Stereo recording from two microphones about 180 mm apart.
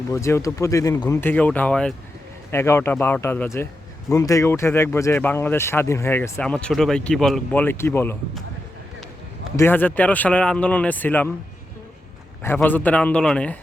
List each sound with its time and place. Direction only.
0.1 s speech: 15° left (ahead or behind)
1.2 s speech: 10° left (ahead or behind)
9.6 s speech: 10° left (ahead or behind)
12.5 s speech: 10° left (ahead or behind)